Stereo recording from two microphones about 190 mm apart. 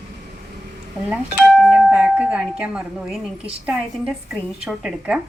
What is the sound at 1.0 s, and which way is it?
Speech, 5° right (ahead or behind).